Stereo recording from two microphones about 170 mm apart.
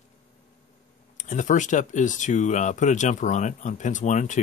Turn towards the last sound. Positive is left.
turn(degrees=45)  # may be behind; listen again after turning